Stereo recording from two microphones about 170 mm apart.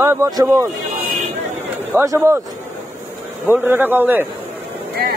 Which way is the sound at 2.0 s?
20° right (ahead or behind).